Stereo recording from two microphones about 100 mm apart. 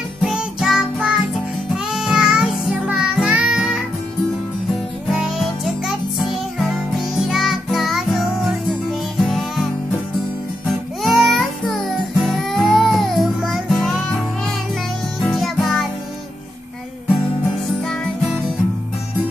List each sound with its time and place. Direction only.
0.2 s music: 5° right (ahead or behind)
5.1 s music: 5° right (ahead or behind)
11.0 s music: centre (ahead or behind)
15.3 s music: centre (ahead or behind)